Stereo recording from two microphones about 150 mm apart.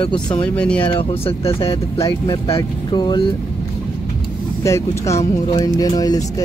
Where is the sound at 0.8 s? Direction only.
35° left (ahead or behind).